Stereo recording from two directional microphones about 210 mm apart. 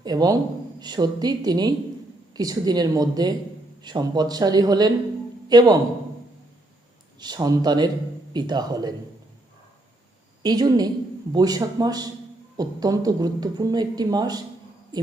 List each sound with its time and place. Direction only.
0.0 s a man's voice: 20° right (ahead or behind)
7.2 s speech: 20° right (ahead or behind)
10.4 s speech: 20° right (ahead or behind)